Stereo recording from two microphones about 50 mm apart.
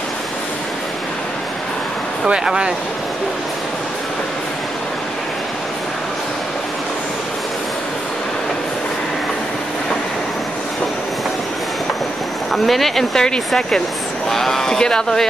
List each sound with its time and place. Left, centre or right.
2.2 s speech: centre
12.5 s speech: centre